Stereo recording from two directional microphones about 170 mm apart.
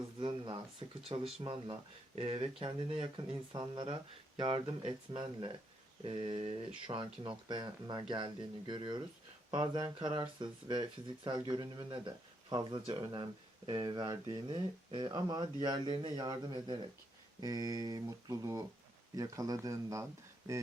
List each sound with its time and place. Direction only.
0.2 s speech: 25° right (ahead or behind)